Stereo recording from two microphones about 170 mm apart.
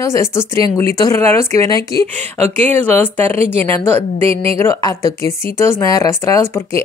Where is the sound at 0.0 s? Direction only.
15° left (ahead or behind).